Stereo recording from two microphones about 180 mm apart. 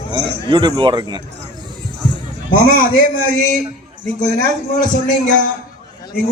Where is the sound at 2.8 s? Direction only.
50° left (ahead or behind).